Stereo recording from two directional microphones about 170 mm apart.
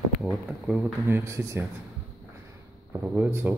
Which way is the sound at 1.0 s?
15° right (ahead or behind).